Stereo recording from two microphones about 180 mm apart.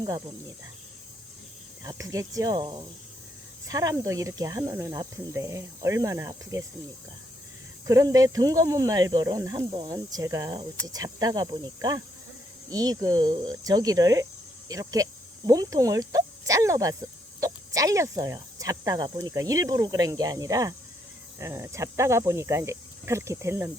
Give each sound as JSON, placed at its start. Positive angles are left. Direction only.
{"t": 1.8, "sound": "speech", "side_deg": -20}
{"t": 7.9, "sound": "speech", "side_deg": -20}